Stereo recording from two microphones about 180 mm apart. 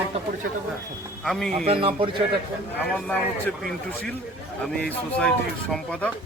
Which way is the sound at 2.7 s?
10° left (ahead or behind).